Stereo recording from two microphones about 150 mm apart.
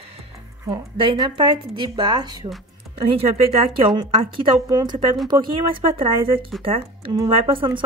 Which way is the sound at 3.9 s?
35° right (ahead or behind).